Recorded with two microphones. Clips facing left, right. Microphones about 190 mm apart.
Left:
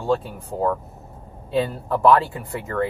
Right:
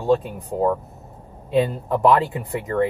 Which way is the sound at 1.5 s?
20° right (ahead or behind).